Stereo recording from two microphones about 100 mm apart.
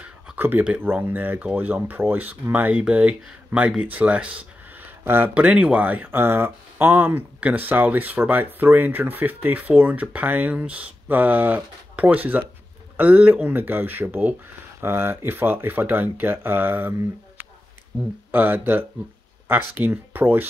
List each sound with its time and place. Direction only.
0.0 s speech: 20° right (ahead or behind)
18.3 s speech: 20° right (ahead or behind)